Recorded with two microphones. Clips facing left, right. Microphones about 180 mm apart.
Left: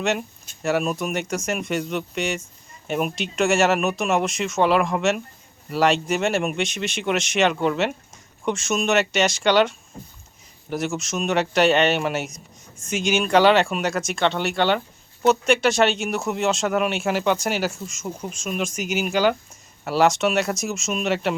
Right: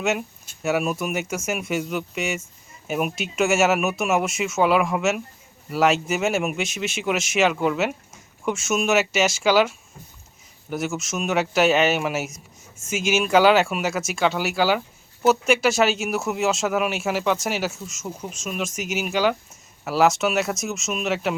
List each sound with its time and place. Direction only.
0.0 s speech: 5° right (ahead or behind)